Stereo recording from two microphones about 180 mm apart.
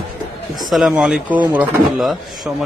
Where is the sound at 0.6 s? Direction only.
Centre (ahead or behind).